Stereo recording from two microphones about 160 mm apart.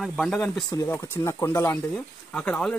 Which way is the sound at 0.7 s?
20° left (ahead or behind).